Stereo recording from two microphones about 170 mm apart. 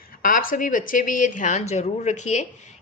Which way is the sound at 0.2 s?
55° left (ahead or behind).